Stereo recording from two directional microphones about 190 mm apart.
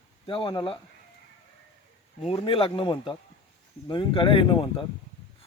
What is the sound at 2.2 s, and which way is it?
Speech, 30° left (ahead or behind).